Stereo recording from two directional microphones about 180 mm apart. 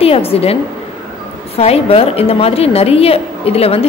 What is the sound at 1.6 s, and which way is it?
A woman's voice, 35° left (ahead or behind).